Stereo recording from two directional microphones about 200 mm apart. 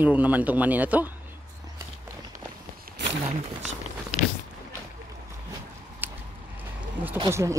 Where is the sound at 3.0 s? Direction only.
60° right (ahead or behind).